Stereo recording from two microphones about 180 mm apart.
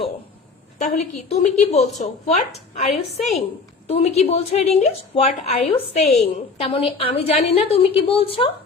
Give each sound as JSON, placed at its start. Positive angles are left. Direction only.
{"t": 1.3, "sound": "a woman's voice", "side_deg": 40}
{"t": 2.9, "sound": "a woman's voice", "side_deg": 0}
{"t": 3.8, "sound": "a woman's voice", "side_deg": 35}